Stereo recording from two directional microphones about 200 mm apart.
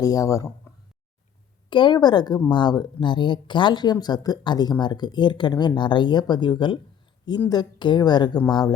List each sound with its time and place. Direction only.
0.0 s speech: 15° left (ahead or behind)
1.7 s speech: 25° left (ahead or behind)